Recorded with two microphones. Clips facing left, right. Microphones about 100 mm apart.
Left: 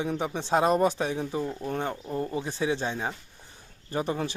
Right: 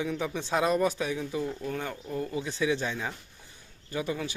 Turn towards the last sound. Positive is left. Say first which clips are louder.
# left 3 dB
turn(degrees=40)  # may be behind; listen again after turning